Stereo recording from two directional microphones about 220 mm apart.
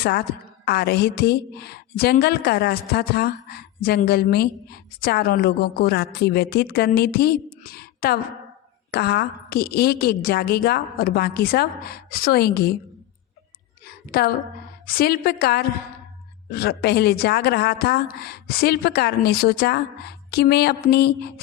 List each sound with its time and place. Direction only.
0.6 s a woman's voice: 45° left (ahead or behind)
13.8 s a sound: 45° left (ahead or behind)
14.8 s a woman's voice: 45° left (ahead or behind)